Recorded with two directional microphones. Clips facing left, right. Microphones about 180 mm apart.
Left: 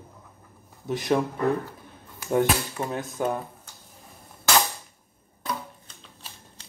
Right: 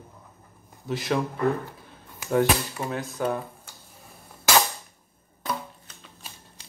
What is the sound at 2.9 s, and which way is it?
Speech, 20° left (ahead or behind).